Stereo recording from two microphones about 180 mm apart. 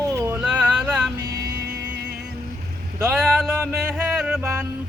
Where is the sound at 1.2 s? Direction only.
70° right (ahead or behind).